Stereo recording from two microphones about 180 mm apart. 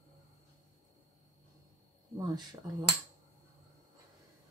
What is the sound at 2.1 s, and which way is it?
Speech, 20° right (ahead or behind).